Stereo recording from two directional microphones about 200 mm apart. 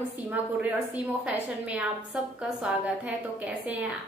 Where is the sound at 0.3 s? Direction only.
10° right (ahead or behind).